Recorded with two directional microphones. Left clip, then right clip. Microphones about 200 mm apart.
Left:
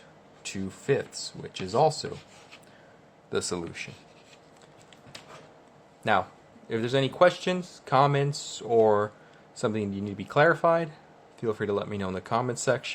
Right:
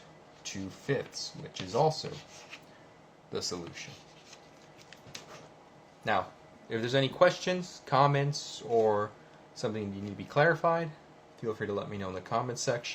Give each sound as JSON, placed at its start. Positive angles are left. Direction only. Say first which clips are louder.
{"t": 0.4, "sound": "speech", "louder": "left 6 dB", "side_deg": 55}
{"t": 3.3, "sound": "speech", "louder": "left 6 dB", "side_deg": 55}
{"t": 6.7, "sound": "speech", "louder": "left 3 dB", "side_deg": 25}
{"t": 8.5, "sound": "speech", "louder": "left 5 dB", "side_deg": 40}